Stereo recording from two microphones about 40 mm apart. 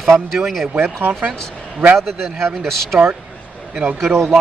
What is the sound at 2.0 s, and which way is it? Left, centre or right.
Speech, centre.